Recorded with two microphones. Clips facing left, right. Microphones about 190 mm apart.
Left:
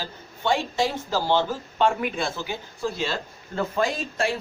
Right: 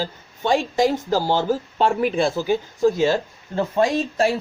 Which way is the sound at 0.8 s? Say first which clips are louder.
Right 5 dB; 40° right (ahead or behind).